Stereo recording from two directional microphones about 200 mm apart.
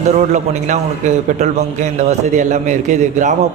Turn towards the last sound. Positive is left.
turn(degrees=-35)  # may be behind; listen again after turning